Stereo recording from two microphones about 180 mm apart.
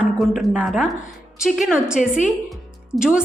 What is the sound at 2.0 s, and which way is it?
Speech, 45° left (ahead or behind).